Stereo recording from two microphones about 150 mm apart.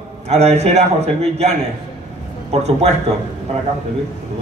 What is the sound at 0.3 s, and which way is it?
A man's voice, 45° right (ahead or behind).